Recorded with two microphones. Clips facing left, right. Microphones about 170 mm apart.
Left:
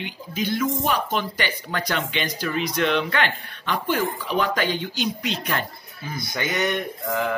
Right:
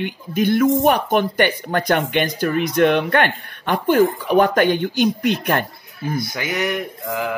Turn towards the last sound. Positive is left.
turn(degrees=-10)  # may be behind; listen again after turning